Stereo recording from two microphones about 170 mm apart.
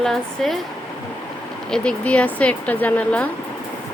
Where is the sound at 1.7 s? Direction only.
5° left (ahead or behind).